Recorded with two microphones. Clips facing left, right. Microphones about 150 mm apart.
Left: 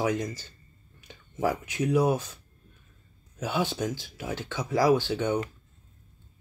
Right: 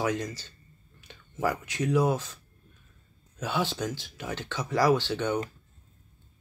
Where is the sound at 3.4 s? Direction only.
10° left (ahead or behind).